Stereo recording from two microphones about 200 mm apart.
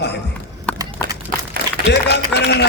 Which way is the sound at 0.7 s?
5° left (ahead or behind).